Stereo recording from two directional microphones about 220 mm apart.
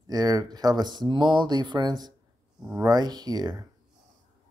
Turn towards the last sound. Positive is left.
turn(degrees=-15)  # may be behind; listen again after turning